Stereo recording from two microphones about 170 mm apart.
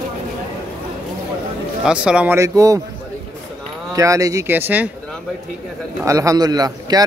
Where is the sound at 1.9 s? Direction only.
5° right (ahead or behind).